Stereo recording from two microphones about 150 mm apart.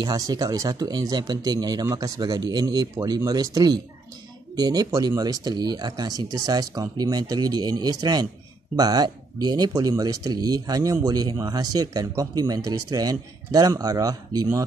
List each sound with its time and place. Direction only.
0.0 s speech: 25° right (ahead or behind)